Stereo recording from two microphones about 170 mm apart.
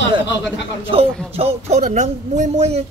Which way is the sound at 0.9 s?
35° right (ahead or behind).